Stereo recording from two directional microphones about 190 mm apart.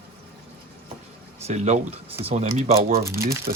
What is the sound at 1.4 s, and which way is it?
Speech, 35° right (ahead or behind).